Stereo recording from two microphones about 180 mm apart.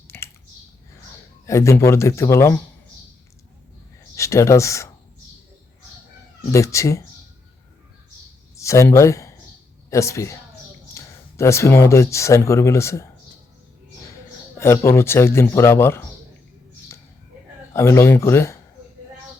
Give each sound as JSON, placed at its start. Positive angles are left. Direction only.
{"t": 0.1, "sound": "typing", "side_deg": 15}
{"t": 1.5, "sound": "speech", "side_deg": 15}
{"t": 4.1, "sound": "speech", "side_deg": 15}
{"t": 6.5, "sound": "speech", "side_deg": 15}
{"t": 8.5, "sound": "speech", "side_deg": 15}
{"t": 14.8, "sound": "speech", "side_deg": 15}
{"t": 17.7, "sound": "speech", "side_deg": 15}